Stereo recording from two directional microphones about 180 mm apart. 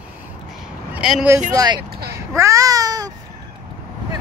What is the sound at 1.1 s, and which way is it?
A woman's voice, 10° right (ahead or behind).